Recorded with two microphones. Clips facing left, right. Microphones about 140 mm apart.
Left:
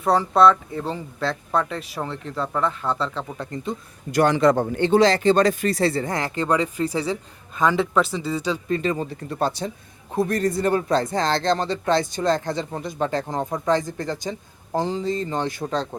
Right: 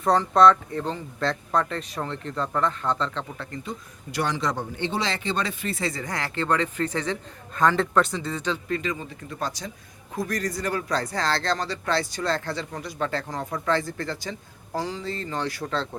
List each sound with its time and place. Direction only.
0.0 s speech: 5° left (ahead or behind); by 3.8 s 20° left (ahead or behind)
4.1 s speech: 50° left (ahead or behind); by 8.6 s 10° left (ahead or behind)
8.6 s speech: 30° left (ahead or behind)